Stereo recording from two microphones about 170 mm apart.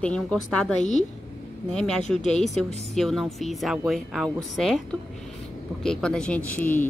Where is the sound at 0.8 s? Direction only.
45° left (ahead or behind).